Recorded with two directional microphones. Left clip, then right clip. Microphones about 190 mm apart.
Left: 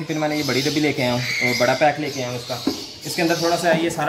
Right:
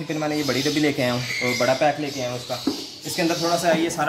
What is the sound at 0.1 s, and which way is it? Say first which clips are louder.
Speech: left 2 dB; 15° right (ahead or behind).